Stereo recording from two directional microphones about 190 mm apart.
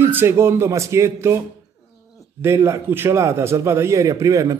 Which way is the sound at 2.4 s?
15° right (ahead or behind).